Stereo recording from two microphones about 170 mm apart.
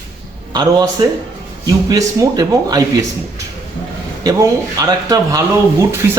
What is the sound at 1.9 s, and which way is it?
A man's voice, 20° right (ahead or behind).